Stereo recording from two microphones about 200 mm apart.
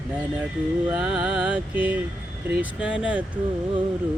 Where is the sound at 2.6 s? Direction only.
5° right (ahead or behind).